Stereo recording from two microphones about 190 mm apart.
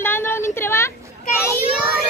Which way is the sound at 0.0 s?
10° left (ahead or behind).